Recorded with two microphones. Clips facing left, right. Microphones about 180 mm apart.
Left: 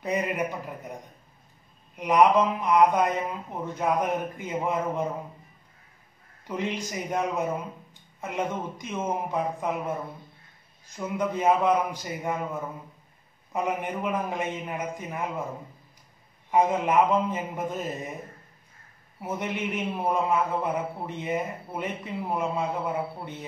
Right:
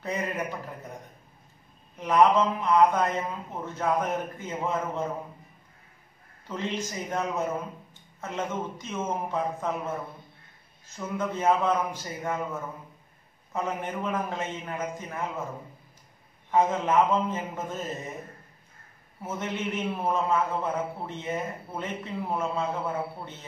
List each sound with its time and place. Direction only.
0.0 s a man's voice: 15° left (ahead or behind)
2.0 s a man's voice: 15° left (ahead or behind)
6.4 s a man's voice: 15° left (ahead or behind)
13.5 s a man's voice: 15° left (ahead or behind)
16.4 s a man's voice: 15° left (ahead or behind)
19.2 s a man's voice: 15° left (ahead or behind)